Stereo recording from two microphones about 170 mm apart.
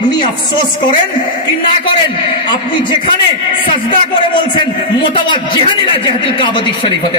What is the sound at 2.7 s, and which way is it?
A man's voice, 30° left (ahead or behind).